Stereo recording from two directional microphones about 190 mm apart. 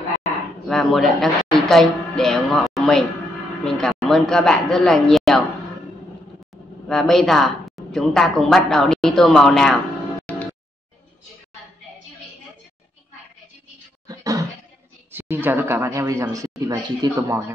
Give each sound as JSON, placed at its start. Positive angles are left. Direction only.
{"t": 0.7, "sound": "a woman's voice", "side_deg": 0}
{"t": 6.9, "sound": "a woman's voice", "side_deg": 5}
{"t": 14.0, "sound": "a sound", "side_deg": -20}
{"t": 15.0, "sound": "a man's voice", "side_deg": -10}